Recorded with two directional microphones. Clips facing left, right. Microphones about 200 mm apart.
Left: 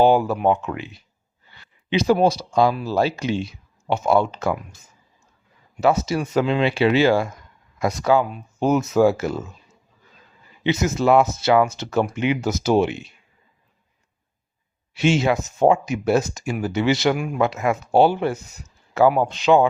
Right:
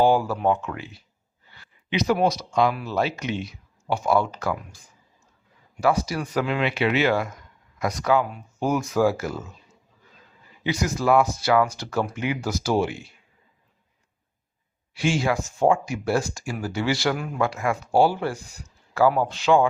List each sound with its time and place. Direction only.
0.0 s speech: 20° left (ahead or behind)
10.6 s speech: 25° left (ahead or behind)
14.9 s speech: 20° left (ahead or behind)